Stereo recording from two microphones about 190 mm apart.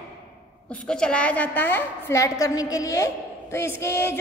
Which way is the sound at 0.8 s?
5° left (ahead or behind).